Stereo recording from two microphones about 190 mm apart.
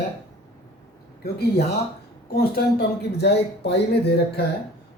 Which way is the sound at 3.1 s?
60° left (ahead or behind).